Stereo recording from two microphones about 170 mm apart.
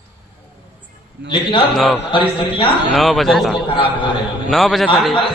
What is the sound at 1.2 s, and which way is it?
Speech, 85° right.